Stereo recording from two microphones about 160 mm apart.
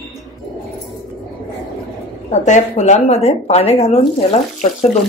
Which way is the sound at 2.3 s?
45° left (ahead or behind).